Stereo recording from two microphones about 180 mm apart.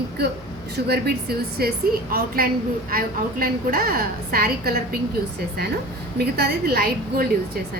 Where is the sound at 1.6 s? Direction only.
55° right (ahead or behind).